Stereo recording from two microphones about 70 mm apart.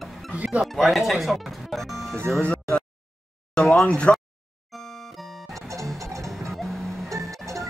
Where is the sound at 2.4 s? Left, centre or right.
Centre.